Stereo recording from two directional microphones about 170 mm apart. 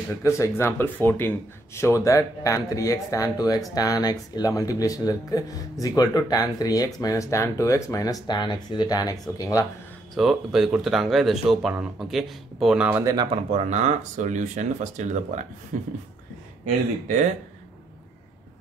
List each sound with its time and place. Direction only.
0.2 s speech: 15° left (ahead or behind)
10.1 s speech: centre (ahead or behind); by 15.4 s 45° right (ahead or behind)
15.7 s beatboxing: 50° right (ahead or behind)